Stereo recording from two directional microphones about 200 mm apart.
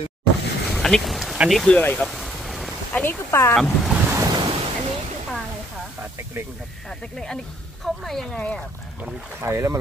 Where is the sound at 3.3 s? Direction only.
15° left (ahead or behind).